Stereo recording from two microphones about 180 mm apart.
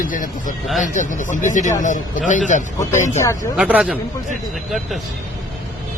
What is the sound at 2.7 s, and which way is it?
Speech, 15° left (ahead or behind).